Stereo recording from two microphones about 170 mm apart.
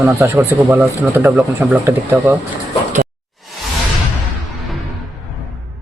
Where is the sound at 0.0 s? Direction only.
10° right (ahead or behind).